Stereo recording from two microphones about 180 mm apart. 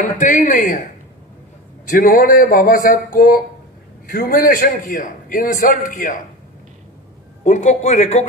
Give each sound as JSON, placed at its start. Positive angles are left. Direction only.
{"t": 0.2, "sound": "a man's voice", "side_deg": 45}
{"t": 1.9, "sound": "a man's voice", "side_deg": 50}
{"t": 7.4, "sound": "speech", "side_deg": 40}